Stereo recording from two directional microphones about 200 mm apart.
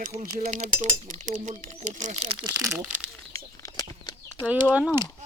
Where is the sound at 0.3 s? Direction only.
35° right (ahead or behind).